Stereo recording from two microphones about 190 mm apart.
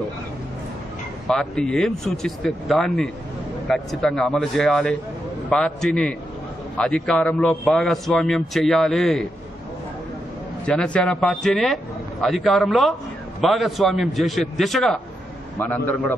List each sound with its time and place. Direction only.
1.2 s a man's voice: centre (ahead or behind)
10.6 s a man's voice: 5° left (ahead or behind)